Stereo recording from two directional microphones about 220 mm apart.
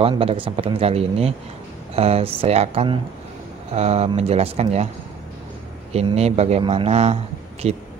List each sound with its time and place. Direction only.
0.0 s speech: 25° right (ahead or behind)
5.9 s speech: 30° right (ahead or behind)